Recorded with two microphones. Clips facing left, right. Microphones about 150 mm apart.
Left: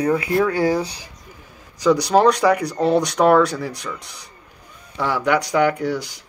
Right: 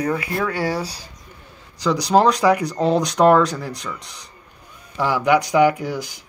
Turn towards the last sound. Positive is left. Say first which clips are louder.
# right 2 dB
turn(degrees=-5)  # may be behind; listen again after turning